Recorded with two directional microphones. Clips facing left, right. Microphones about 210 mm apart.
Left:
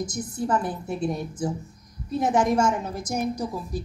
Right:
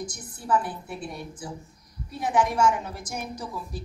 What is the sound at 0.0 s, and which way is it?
A woman's voice, 40° left (ahead or behind).